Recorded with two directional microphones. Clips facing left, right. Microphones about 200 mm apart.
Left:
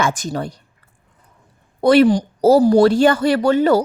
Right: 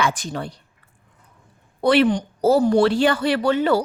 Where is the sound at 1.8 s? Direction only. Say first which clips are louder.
Left 5 dB; 40° left (ahead or behind).